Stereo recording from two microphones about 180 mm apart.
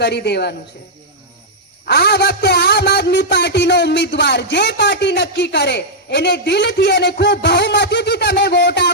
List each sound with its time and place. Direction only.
0.0 s a man's voice: 70° left (ahead or behind)
1.8 s a man's voice: 65° left (ahead or behind)